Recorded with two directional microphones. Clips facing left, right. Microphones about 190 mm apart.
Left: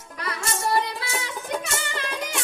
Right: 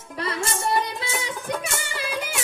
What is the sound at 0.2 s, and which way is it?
Music, 25° right (ahead or behind).